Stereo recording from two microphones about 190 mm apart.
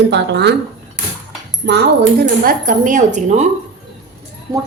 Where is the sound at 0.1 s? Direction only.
65° right (ahead or behind).